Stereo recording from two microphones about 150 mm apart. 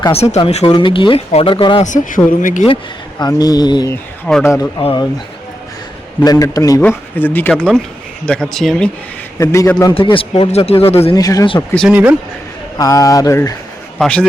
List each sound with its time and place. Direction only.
0.1 s speech: 45° left (ahead or behind)
0.6 s speech: 30° left (ahead or behind)
1.8 s speech: 60° left (ahead or behind)
3.2 s speech: 25° left (ahead or behind)
4.4 s speech: 15° left (ahead or behind)
4.8 s speech: 35° left (ahead or behind)
6.2 s speech: 25° left (ahead or behind)
6.8 s speech: 10° left (ahead or behind)
9.4 s speech: 20° left (ahead or behind)
9.9 s speech: 35° left (ahead or behind)
11.2 s speech: 25° left (ahead or behind)
11.9 s speech: 10° right (ahead or behind)
12.7 s speech: 25° left (ahead or behind)
14.0 s speech: 5° left (ahead or behind)